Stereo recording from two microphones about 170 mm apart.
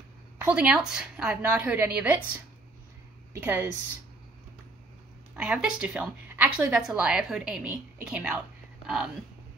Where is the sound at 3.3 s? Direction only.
10° right (ahead or behind).